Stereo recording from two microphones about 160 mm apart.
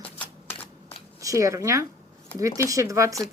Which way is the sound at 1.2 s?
20° right (ahead or behind).